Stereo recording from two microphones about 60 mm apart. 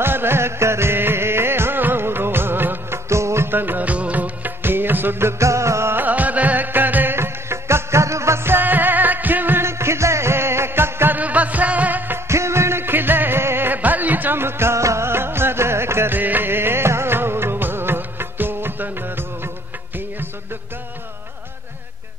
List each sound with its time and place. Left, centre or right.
0.0 s music: right
3.1 s music: right
5.4 s music: right
5.9 s music: right
7.2 s music: right
8.5 s music: right
11.1 s music: right
12.3 s music: right
16.2 s music: right